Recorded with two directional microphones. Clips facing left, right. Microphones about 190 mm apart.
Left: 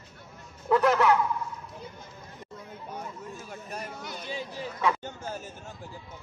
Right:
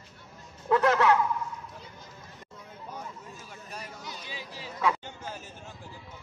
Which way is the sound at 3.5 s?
50° left (ahead or behind).